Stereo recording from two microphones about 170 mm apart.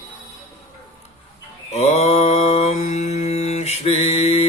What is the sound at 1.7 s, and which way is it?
Mantra, 40° left (ahead or behind).